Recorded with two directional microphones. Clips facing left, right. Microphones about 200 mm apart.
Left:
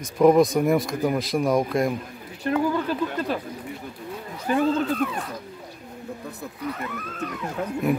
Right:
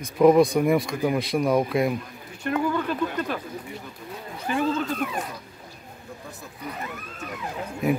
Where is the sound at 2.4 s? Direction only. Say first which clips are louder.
Left 2 dB; 35° left (ahead or behind).